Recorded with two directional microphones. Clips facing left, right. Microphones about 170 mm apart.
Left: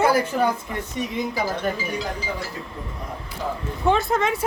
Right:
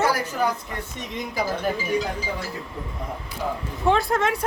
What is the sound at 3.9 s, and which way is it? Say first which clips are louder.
Speech: even; centre (ahead or behind).